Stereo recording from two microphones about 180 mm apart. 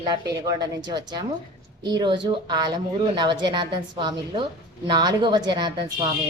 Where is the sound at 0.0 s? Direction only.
25° right (ahead or behind).